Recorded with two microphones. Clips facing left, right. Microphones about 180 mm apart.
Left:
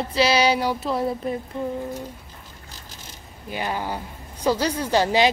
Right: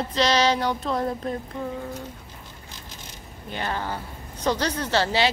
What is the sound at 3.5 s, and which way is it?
Speech, 10° left (ahead or behind).